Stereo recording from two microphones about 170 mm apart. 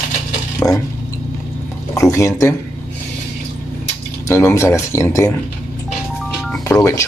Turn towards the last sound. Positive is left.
turn(degrees=15)  # may be behind; listen again after turning